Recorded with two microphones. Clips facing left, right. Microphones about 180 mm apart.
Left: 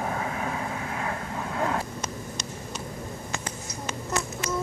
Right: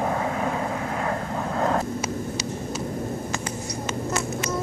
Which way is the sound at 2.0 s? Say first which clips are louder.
Right 7 dB; 5° right (ahead or behind).